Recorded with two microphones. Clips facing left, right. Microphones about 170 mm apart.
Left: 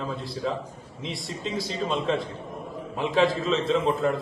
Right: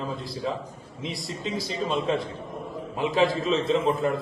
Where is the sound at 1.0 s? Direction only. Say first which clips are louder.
Right 1 dB; centre (ahead or behind).